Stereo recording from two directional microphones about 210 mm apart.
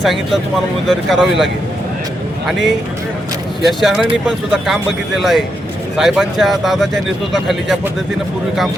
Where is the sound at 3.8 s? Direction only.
Centre (ahead or behind).